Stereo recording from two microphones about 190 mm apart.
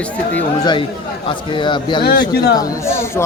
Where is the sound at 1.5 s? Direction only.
25° left (ahead or behind).